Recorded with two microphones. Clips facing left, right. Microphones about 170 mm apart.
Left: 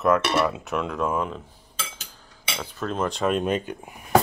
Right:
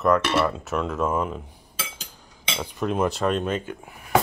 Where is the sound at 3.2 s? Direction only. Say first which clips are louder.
Left 1 dB; 15° left (ahead or behind).